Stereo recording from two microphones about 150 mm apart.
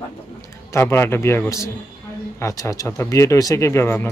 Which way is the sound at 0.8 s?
15° left (ahead or behind).